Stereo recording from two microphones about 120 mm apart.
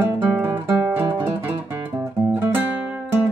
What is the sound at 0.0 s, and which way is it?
Guitar, 15° right (ahead or behind).